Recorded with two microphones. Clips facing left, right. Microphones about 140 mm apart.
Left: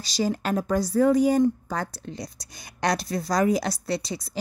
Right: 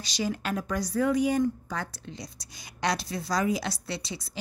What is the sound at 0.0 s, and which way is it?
A woman's voice, 35° left (ahead or behind).